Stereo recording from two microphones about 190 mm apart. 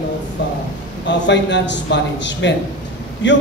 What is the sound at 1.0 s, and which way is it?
A man's voice, 70° left (ahead or behind).